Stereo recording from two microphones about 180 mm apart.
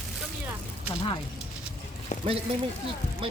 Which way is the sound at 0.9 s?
25° left (ahead or behind).